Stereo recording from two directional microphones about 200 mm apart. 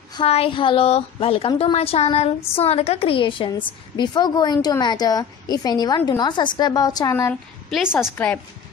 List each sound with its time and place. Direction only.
0.1 s a woman's voice: 30° left (ahead or behind); by 8.4 s 10° left (ahead or behind)